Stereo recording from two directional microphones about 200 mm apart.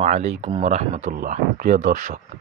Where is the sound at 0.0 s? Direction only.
35° right (ahead or behind).